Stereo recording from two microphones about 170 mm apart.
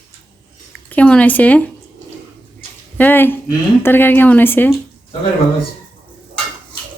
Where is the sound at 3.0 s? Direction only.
10° left (ahead or behind).